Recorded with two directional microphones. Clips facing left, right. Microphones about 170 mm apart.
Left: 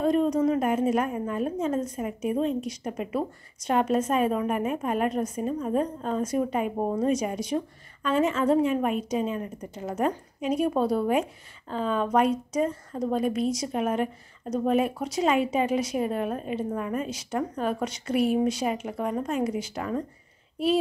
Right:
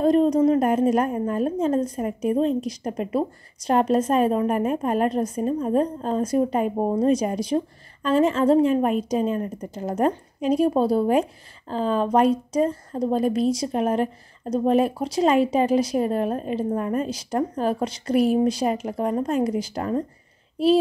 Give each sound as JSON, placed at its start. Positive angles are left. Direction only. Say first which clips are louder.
{"t": 0.0, "sound": "speech", "louder": "right 5 dB", "side_deg": -35}